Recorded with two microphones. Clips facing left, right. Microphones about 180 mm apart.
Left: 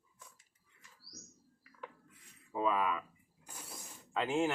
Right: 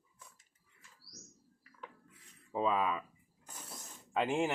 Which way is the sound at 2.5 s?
25° right (ahead or behind).